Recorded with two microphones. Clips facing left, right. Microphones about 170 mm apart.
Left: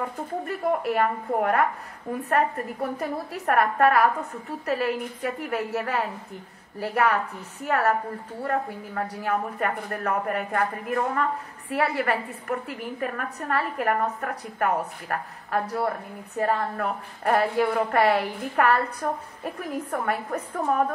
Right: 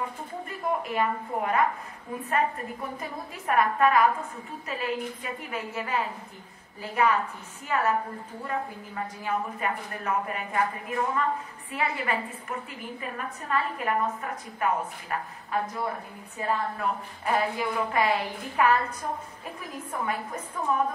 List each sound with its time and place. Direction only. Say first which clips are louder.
0.7 s a woman's voice: left 3 dB; 60° left (ahead or behind)